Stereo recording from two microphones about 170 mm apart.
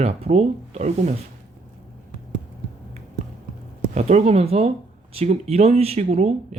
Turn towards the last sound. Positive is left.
turn(degrees=-40)  # may be behind; listen again after turning